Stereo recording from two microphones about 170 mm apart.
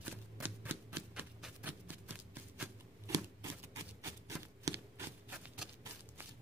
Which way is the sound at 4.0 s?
15° right (ahead or behind).